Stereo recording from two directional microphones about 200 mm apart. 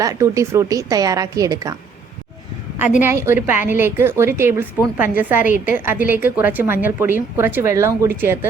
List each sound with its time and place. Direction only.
0.0 s a woman's voice: 15° right (ahead or behind)
3.0 s a woman's voice: 10° right (ahead or behind)
5.4 s a woman's voice: 40° left (ahead or behind)
5.7 s a woman's voice: 10° right (ahead or behind)